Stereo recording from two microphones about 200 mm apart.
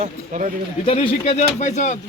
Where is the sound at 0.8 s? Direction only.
30° left (ahead or behind).